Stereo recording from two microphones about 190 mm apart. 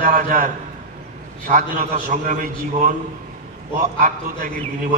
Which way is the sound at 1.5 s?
45° right (ahead or behind).